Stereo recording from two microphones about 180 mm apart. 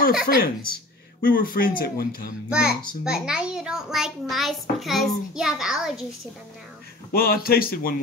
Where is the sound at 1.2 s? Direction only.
50° left (ahead or behind).